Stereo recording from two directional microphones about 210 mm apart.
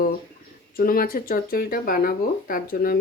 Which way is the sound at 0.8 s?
45° left (ahead or behind).